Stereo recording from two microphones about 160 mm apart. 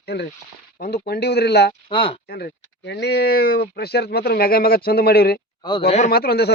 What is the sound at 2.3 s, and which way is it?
Speech, 80° left.